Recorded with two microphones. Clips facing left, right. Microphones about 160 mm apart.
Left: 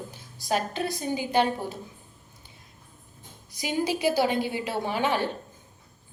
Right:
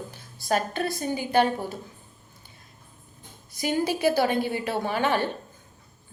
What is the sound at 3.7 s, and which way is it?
Speech, 15° left (ahead or behind).